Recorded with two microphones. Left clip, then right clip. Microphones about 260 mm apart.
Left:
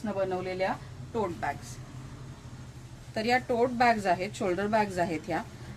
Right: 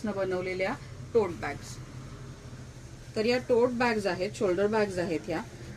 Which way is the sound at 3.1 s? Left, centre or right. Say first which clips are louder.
Right 1 dB; left.